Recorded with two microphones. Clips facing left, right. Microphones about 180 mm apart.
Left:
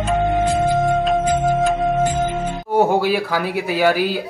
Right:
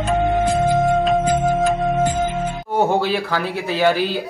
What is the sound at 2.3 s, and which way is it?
Music, 10° right (ahead or behind).